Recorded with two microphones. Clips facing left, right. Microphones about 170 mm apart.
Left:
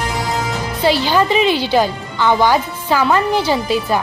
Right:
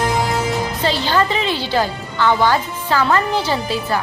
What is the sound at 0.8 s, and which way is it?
A woman's voice, 10° left (ahead or behind).